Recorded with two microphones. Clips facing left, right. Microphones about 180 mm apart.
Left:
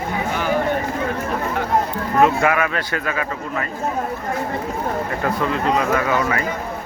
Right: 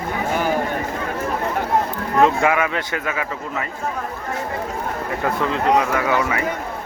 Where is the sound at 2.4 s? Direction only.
20° right (ahead or behind).